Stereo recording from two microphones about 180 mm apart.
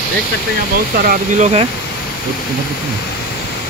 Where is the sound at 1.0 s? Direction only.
40° right (ahead or behind).